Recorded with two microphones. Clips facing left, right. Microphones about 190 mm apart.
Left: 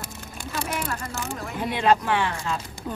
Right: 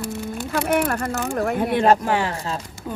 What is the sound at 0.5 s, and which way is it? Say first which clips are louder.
Speech: right 9 dB; 60° right (ahead or behind).